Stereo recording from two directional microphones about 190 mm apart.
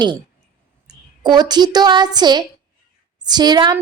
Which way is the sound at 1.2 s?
20° right (ahead or behind).